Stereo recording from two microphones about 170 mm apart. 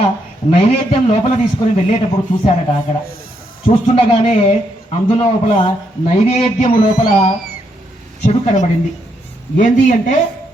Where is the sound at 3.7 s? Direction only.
35° left (ahead or behind).